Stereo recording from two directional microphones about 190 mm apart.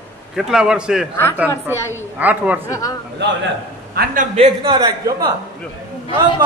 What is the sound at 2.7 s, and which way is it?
Speech, 15° left (ahead or behind).